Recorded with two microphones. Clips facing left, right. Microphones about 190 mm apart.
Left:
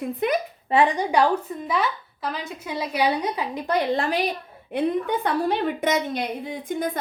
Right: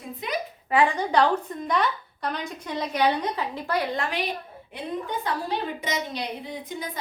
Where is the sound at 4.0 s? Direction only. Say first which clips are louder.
Left 5 dB; 35° left (ahead or behind).